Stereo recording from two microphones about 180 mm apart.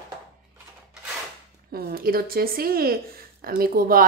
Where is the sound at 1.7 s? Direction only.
55° right (ahead or behind).